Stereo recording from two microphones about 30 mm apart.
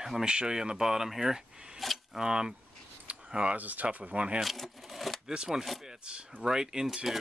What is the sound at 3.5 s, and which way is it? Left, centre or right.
Speech, right.